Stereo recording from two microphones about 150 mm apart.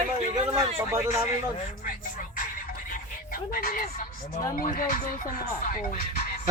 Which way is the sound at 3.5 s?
75° left (ahead or behind).